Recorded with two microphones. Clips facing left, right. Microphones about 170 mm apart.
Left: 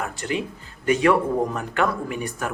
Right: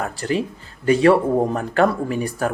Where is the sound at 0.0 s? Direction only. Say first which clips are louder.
Right 4 dB; 35° right (ahead or behind).